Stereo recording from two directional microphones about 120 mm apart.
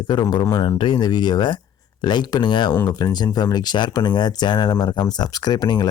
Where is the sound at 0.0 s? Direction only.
40° left (ahead or behind).